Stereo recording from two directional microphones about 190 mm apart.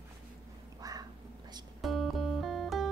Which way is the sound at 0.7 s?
20° right (ahead or behind).